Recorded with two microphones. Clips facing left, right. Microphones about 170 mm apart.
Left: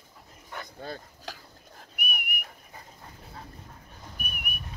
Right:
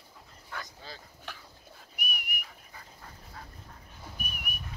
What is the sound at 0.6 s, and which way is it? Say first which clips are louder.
Dog: left 8 dB; 55° left (ahead or behind).